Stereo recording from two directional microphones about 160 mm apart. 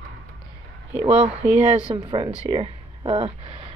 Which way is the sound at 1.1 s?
40° right (ahead or behind).